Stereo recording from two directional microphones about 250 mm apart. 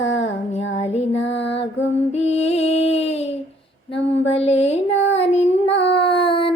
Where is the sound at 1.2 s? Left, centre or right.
Left.